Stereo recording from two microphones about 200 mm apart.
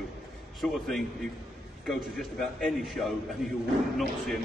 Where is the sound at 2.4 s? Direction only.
Centre (ahead or behind).